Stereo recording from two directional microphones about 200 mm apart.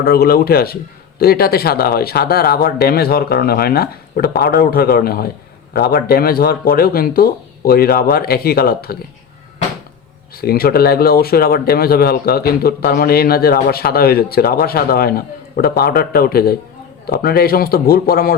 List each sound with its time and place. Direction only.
0.0 s speech: 50° left (ahead or behind)
10.4 s speech: 50° left (ahead or behind)